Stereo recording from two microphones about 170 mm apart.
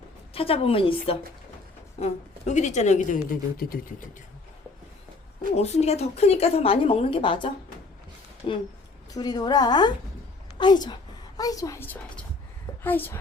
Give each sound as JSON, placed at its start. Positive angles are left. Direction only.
{"t": 0.3, "sound": "a woman's voice", "side_deg": 35}
{"t": 5.5, "sound": "a woman's voice", "side_deg": 40}